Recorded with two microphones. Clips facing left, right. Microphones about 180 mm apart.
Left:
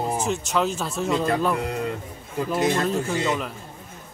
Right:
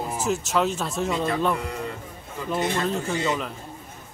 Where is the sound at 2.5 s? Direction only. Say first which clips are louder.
Left 2 dB; centre (ahead or behind).